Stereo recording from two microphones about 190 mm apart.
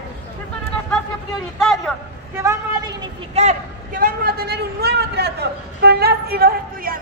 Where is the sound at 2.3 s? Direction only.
15° right (ahead or behind).